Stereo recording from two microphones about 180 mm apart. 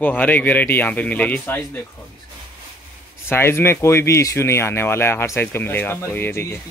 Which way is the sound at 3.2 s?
15° left (ahead or behind).